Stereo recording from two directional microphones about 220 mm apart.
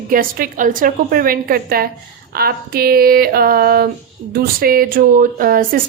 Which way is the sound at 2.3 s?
45° right (ahead or behind).